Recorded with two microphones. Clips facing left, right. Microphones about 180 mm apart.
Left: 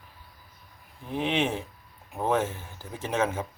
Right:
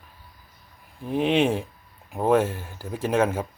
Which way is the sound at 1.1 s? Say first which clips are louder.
Right 6 dB; 15° right (ahead or behind).